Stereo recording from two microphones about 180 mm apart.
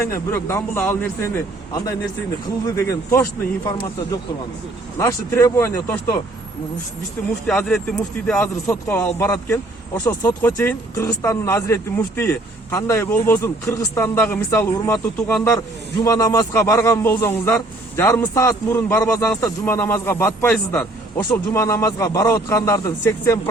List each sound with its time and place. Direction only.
0.1 s speech: 15° left (ahead or behind)
2.6 s speech: 15° left (ahead or behind)
4.9 s speech: 15° left (ahead or behind)
7.4 s speech: 5° left (ahead or behind)
8.6 s speech: 15° left (ahead or behind)